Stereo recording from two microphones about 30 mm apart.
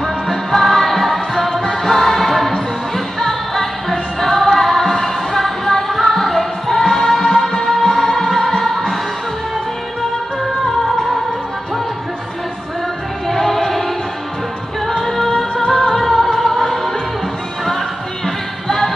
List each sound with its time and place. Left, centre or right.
0.3 s music: centre
13.3 s music: centre